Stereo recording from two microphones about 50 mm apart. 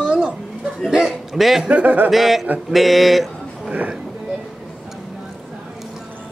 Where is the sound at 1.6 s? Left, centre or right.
Right.